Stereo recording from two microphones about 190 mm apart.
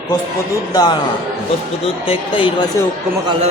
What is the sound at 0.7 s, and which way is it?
Speech, 20° left (ahead or behind).